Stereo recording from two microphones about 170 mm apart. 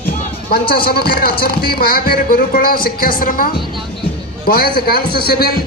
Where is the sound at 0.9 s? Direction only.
65° left (ahead or behind).